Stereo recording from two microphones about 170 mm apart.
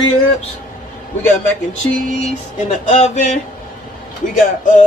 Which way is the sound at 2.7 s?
45° left (ahead or behind).